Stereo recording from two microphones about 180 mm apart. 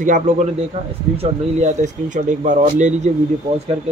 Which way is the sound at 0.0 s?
45° right (ahead or behind).